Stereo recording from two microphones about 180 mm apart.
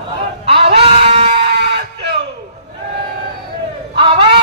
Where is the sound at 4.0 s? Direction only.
30° right (ahead or behind).